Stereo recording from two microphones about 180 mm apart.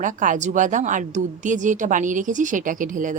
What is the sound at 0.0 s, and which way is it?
Speech, 45° right (ahead or behind).